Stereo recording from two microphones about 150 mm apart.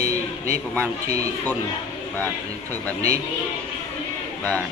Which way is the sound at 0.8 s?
20° right (ahead or behind).